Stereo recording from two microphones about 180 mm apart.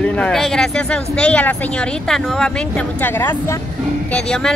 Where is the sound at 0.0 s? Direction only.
5° left (ahead or behind).